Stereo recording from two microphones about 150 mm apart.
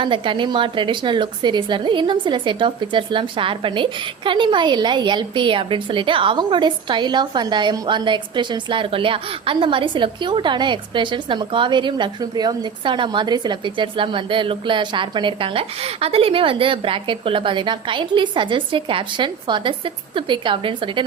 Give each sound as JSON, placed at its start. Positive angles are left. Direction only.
{"t": 0.0, "sound": "a woman's voice", "side_deg": -35}